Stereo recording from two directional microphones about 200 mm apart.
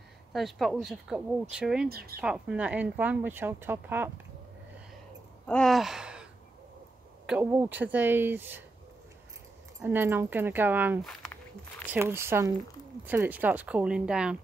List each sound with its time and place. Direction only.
0.3 s speech: centre (ahead or behind)
1.9 s speech: 50° right (ahead or behind)
2.2 s speech: 5° right (ahead or behind)
5.5 s speech: centre (ahead or behind)
7.2 s speech: 10° right (ahead or behind)
9.8 s speech: 10° right (ahead or behind)